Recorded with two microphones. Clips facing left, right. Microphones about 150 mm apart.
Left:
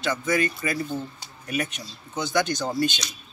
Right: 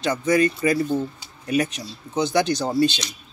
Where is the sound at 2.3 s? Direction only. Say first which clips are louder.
Right 2 dB; 30° right (ahead or behind).